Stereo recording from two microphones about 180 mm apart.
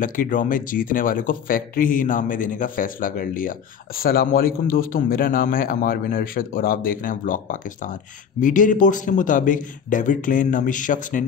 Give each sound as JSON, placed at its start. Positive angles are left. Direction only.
{"t": 0.0, "sound": "speech", "side_deg": 50}